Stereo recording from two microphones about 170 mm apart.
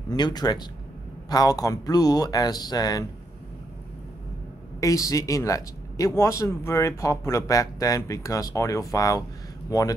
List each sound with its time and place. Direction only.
0.1 s speech: 25° left (ahead or behind)
4.7 s speech: 20° left (ahead or behind)